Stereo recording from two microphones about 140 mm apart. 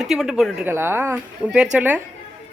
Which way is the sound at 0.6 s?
15° right (ahead or behind).